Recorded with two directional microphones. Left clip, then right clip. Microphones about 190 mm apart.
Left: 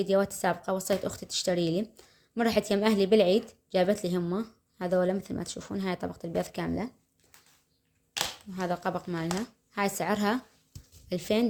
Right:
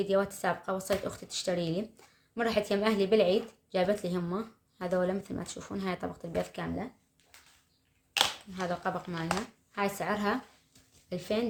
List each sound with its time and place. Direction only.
0.0 s a woman's voice: 30° left (ahead or behind)
8.5 s speech: 35° left (ahead or behind)